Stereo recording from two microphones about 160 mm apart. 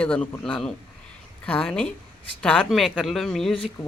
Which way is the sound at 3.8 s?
35° left (ahead or behind).